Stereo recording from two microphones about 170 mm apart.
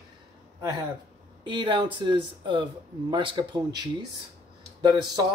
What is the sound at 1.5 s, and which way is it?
Speech, 30° right (ahead or behind).